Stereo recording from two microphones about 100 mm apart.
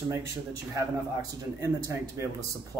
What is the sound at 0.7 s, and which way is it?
Speech, 35° right (ahead or behind).